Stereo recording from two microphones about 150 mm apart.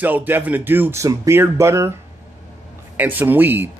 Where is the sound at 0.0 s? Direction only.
10° right (ahead or behind).